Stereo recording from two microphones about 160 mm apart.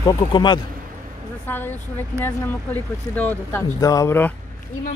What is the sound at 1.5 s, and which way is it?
Speech, 10° left (ahead or behind).